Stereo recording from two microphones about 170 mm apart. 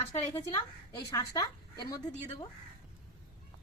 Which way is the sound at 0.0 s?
30° left (ahead or behind).